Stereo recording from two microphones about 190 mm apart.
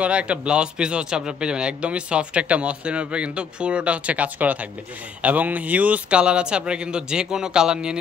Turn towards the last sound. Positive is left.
turn(degrees=-5)  # may be behind; listen again after turning